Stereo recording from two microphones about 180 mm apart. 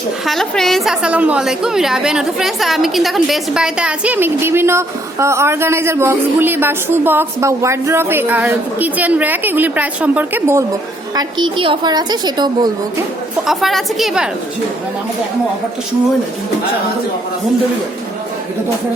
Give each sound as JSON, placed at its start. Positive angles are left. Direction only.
{"t": 0.3, "sound": "a woman's voice", "side_deg": 0}
{"t": 13.5, "sound": "a woman's voice", "side_deg": 0}